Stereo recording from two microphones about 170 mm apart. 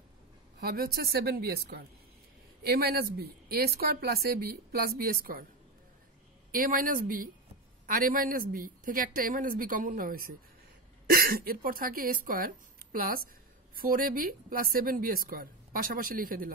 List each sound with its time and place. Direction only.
0.6 s speech: 65° right (ahead or behind)
6.5 s speech: 55° right (ahead or behind)